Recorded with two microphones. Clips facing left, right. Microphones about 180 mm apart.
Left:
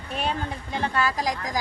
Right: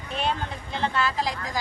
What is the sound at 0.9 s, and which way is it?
Speech, 40° left (ahead or behind).